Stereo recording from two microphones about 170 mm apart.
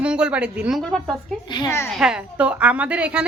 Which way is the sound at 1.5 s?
20° left (ahead or behind).